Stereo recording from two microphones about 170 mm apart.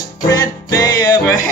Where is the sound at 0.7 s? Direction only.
20° left (ahead or behind).